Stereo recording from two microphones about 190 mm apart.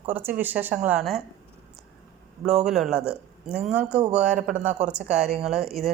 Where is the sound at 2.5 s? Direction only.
Centre (ahead or behind).